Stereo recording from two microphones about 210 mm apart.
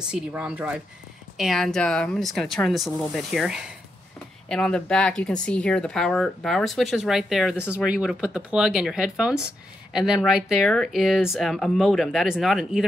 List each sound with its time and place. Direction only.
0.0 s speech: 5° right (ahead or behind)